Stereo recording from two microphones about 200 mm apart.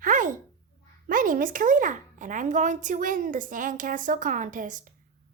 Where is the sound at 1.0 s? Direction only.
45° right (ahead or behind).